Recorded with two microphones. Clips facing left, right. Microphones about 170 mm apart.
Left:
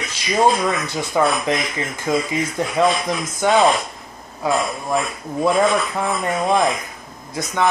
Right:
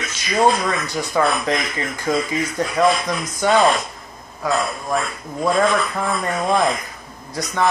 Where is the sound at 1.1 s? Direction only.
15° left (ahead or behind).